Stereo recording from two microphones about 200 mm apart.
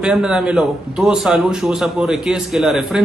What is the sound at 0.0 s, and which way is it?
A man's voice, 5° right (ahead or behind).